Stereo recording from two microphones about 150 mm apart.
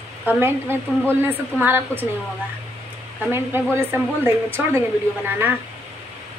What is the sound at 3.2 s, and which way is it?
Speech, 15° right (ahead or behind).